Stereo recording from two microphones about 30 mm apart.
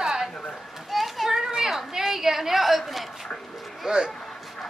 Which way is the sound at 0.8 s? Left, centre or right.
Centre.